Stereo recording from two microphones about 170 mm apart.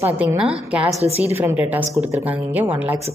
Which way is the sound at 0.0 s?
10° right (ahead or behind).